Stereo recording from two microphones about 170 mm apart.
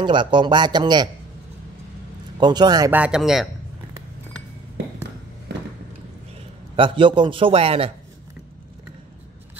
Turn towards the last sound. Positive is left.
turn(degrees=-35)  # may be behind; listen again after turning